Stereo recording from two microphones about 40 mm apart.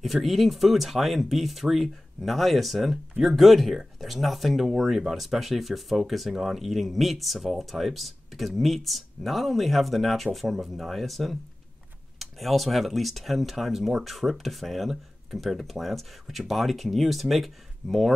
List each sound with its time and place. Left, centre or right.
0.0 s speech: centre